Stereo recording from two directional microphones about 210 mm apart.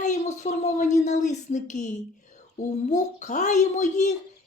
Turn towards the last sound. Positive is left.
turn(degrees=35)  # may be behind; listen again after turning